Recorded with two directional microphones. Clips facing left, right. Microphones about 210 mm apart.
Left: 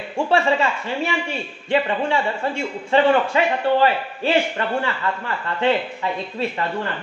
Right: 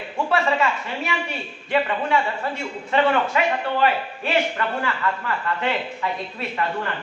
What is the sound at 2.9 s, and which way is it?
A man's voice, 30° left (ahead or behind).